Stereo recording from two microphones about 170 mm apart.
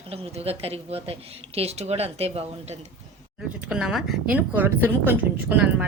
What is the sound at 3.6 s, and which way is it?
A woman's voice, 5° right (ahead or behind).